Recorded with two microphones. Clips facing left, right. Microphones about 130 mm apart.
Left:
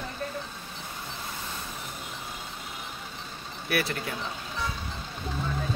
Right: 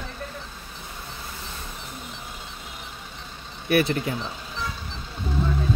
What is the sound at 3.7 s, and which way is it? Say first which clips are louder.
Speech: right 8 dB; 25° right (ahead or behind).